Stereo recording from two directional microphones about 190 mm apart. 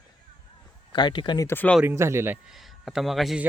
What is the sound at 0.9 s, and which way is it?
Speech, 25° left (ahead or behind).